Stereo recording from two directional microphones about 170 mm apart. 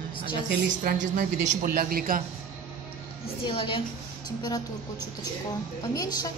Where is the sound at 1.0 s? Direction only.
50° right (ahead or behind).